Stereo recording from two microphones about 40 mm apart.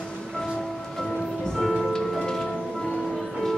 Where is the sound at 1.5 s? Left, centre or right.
Centre.